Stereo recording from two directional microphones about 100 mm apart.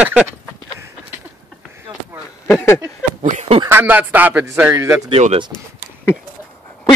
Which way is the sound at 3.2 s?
60° right (ahead or behind).